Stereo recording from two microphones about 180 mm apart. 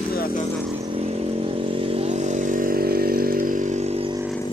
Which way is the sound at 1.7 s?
30° right (ahead or behind).